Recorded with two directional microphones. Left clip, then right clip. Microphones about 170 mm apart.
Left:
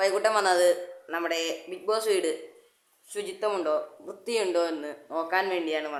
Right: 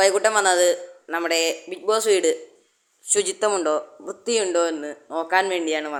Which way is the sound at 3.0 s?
35° right (ahead or behind).